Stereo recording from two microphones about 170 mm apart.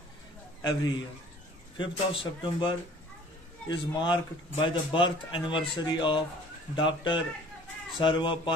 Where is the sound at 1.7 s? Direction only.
30° left (ahead or behind).